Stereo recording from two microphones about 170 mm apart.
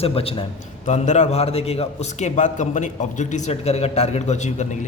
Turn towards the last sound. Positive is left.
turn(degrees=45)  # may be behind; listen again after turning